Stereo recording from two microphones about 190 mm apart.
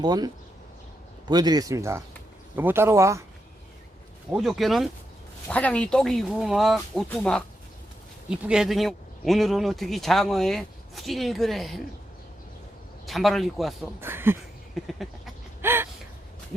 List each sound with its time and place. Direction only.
0.0 s speech: 20° right (ahead or behind)
1.3 s speech: 20° right (ahead or behind)
4.3 s speech: centre (ahead or behind)
13.1 s speech: centre (ahead or behind)
14.0 s speech: 10° right (ahead or behind)
14.8 s speech: centre (ahead or behind)
15.6 s gasp: 10° right (ahead or behind)